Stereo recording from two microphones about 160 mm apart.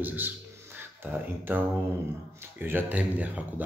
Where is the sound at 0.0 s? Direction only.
10° right (ahead or behind).